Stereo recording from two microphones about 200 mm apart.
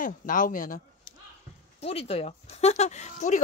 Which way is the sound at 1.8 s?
30° left (ahead or behind).